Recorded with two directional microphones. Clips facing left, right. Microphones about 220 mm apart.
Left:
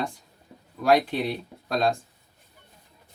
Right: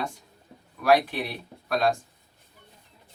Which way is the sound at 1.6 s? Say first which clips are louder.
Even; 25° left (ahead or behind).